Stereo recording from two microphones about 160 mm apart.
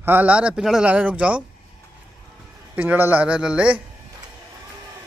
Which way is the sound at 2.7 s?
10° right (ahead or behind).